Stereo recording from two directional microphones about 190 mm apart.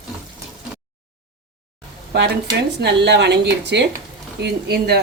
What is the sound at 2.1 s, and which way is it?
Speech, 65° right (ahead or behind).